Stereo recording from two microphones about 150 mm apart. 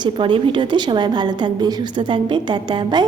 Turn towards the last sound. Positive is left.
turn(degrees=-30)  # may be behind; listen again after turning